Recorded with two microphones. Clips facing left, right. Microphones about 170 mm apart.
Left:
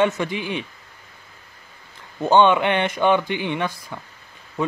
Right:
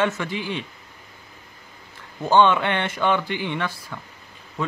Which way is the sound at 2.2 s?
20° left (ahead or behind).